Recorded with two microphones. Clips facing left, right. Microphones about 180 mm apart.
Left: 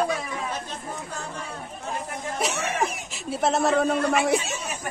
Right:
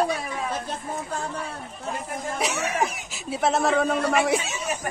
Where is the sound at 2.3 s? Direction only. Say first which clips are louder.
Even; centre (ahead or behind).